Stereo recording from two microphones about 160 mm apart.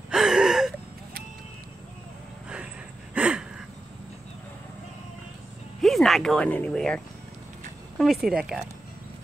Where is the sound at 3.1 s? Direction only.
10° right (ahead or behind).